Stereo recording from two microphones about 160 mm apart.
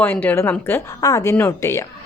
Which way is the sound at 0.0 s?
10° left (ahead or behind).